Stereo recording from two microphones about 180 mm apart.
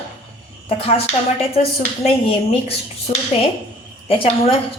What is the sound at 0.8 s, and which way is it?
A woman's voice, 30° left (ahead or behind).